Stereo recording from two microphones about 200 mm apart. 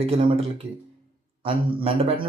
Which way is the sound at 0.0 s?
25° right (ahead or behind).